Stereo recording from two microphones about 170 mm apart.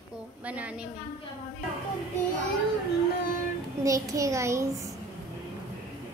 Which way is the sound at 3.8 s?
20° right (ahead or behind).